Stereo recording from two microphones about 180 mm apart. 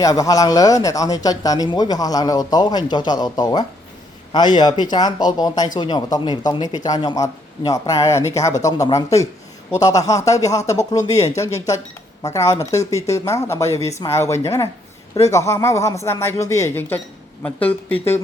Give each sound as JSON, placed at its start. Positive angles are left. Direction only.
{"t": 0.0, "sound": "speech", "side_deg": 20}